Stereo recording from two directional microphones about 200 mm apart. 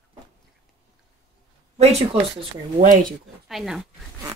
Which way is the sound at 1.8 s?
30° right (ahead or behind).